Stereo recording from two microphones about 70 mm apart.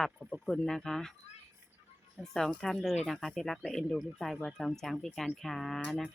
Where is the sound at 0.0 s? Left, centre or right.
Centre.